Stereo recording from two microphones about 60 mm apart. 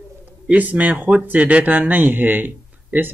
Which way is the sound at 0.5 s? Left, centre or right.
Right.